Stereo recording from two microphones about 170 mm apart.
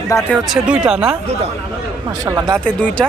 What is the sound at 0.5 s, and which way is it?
Speech, 5° right (ahead or behind).